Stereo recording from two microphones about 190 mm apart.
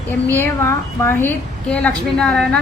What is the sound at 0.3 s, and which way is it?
A woman's voice, 15° left (ahead or behind).